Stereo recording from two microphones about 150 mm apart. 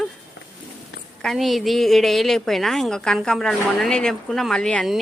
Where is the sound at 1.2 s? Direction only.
Centre (ahead or behind).